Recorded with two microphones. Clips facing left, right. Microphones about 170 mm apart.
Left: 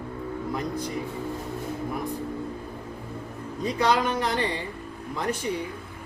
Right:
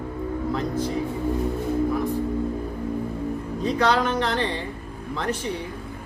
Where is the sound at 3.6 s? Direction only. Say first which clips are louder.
Right 2 dB; 10° left (ahead or behind).